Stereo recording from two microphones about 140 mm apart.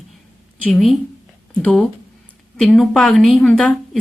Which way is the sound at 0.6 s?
Centre (ahead or behind).